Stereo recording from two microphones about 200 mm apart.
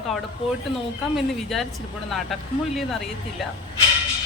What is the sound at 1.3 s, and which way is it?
Speech, centre (ahead or behind).